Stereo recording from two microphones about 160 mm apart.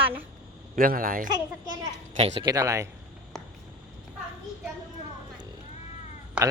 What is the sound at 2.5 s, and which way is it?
Speech, 20° right (ahead or behind).